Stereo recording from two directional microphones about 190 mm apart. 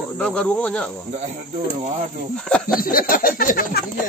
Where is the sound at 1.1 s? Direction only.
35° right (ahead or behind).